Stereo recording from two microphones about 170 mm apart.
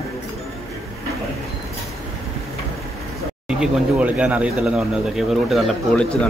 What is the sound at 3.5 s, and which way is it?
Speech, 5° right (ahead or behind).